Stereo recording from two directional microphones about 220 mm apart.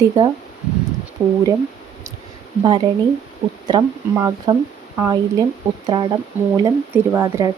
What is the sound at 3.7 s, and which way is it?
Speech, 15° right (ahead or behind).